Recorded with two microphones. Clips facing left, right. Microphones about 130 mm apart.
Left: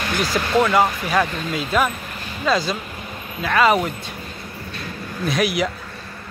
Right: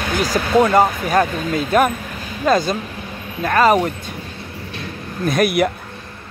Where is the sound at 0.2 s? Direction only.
40° right (ahead or behind).